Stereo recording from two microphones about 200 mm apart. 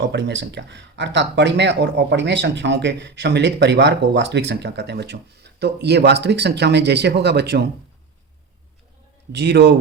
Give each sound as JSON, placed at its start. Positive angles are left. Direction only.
{"t": 0.1, "sound": "speech", "side_deg": -60}
{"t": 9.3, "sound": "speech", "side_deg": -55}